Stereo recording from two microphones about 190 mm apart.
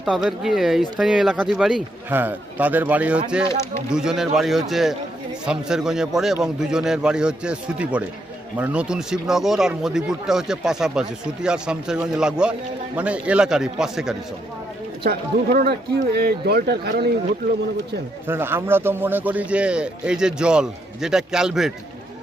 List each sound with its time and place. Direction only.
0.0 s a man's voice: centre (ahead or behind)
15.0 s speech: 55° right (ahead or behind)
18.3 s a man's voice: 10° right (ahead or behind)